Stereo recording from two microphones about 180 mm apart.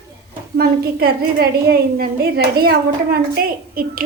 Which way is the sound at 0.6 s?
60° right (ahead or behind).